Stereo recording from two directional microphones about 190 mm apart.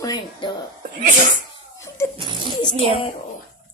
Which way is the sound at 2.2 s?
25° right (ahead or behind).